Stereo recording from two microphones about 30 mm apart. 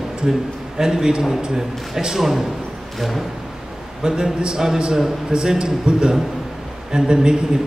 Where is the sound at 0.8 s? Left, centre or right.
Centre.